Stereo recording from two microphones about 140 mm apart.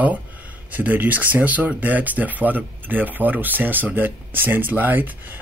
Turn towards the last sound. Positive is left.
turn(degrees=-15)  # may be behind; listen again after turning